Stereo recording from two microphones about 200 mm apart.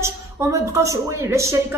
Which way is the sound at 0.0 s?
15° right (ahead or behind).